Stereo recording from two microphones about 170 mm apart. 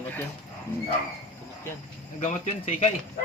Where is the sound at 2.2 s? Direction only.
40° left (ahead or behind).